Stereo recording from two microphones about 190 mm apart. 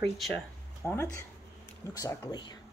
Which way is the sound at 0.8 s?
15° left (ahead or behind).